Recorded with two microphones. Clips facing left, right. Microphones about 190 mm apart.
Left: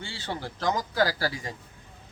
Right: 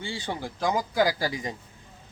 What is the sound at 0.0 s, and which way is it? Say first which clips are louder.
Speech: right 2 dB; 15° right (ahead or behind).